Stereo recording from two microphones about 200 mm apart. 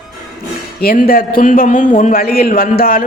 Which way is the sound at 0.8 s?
50° left (ahead or behind).